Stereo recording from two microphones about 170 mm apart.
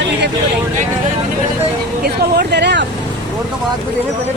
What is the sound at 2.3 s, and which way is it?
Speech, 85° right.